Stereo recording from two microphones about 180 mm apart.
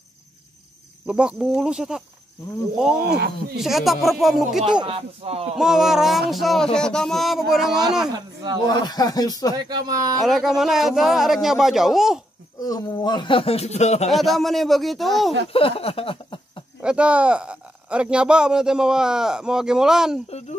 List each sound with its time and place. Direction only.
1.0 s speech: 5° right (ahead or behind)
3.0 s speech: 60° right (ahead or behind)
3.5 s speech: centre (ahead or behind)
4.8 s speech: 30° right (ahead or behind)
5.6 s speech: centre (ahead or behind)
8.6 s speech: 20° left (ahead or behind)
9.7 s speech: 20° right (ahead or behind)
10.2 s speech: centre (ahead or behind)
12.6 s speech: 20° left (ahead or behind); by 14.1 s 35° left (ahead or behind)
14.1 s speech: centre (ahead or behind)
15.5 s a sound: 30° left (ahead or behind)
16.8 s speech: 5° right (ahead or behind)
20.2 s speech: 35° left (ahead or behind)